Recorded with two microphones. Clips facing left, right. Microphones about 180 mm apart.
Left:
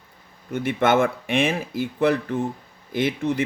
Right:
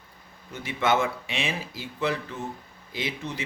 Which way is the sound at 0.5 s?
55° left (ahead or behind).